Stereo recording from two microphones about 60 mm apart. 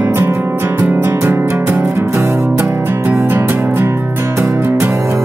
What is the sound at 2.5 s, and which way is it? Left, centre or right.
Music, right.